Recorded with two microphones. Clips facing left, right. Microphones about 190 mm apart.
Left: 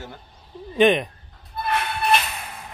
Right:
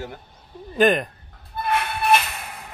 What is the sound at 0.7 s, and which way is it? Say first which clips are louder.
Speech: left 1 dB; centre (ahead or behind).